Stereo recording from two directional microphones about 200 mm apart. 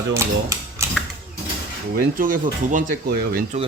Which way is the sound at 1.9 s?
45° right (ahead or behind).